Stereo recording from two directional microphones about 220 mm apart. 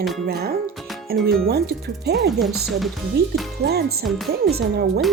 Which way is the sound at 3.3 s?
45° right (ahead or behind).